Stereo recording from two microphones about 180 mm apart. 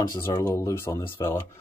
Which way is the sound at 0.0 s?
20° left (ahead or behind).